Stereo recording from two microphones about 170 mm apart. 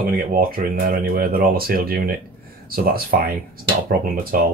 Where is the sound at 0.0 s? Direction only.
60° right (ahead or behind).